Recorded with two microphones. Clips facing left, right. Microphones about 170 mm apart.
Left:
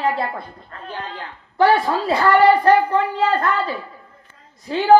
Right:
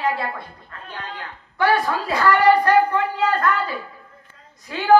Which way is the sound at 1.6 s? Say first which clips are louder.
Left 4 dB; 30° left (ahead or behind).